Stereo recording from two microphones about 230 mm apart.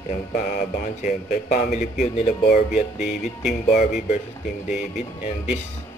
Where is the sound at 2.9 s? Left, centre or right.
Centre.